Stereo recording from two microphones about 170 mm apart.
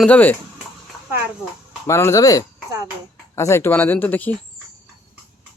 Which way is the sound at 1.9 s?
15° left (ahead or behind).